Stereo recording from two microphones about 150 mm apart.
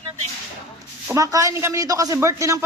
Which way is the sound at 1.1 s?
20° right (ahead or behind).